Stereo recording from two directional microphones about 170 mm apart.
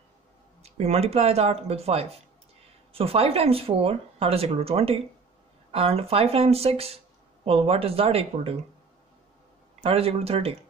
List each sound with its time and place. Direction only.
0.6 s speech: 35° right (ahead or behind)
9.8 s speech: 35° right (ahead or behind)